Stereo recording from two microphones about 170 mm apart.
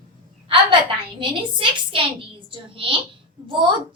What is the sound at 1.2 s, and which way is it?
A child's voice, 30° right (ahead or behind).